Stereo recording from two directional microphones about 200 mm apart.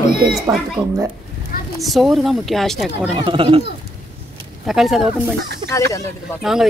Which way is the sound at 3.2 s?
25° right (ahead or behind).